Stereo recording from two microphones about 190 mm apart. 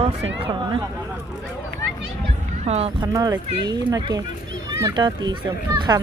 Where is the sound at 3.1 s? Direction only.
20° right (ahead or behind).